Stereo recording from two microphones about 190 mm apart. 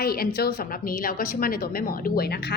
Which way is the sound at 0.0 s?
55° left (ahead or behind).